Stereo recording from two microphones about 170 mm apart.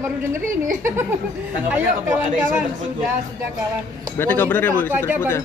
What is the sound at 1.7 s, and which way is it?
Speech, 10° right (ahead or behind).